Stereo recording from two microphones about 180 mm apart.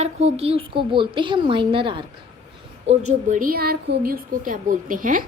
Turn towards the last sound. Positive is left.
turn(degrees=-50)  # may be behind; listen again after turning